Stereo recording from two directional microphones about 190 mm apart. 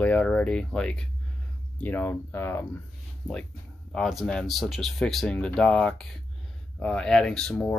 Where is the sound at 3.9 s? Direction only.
Centre (ahead or behind).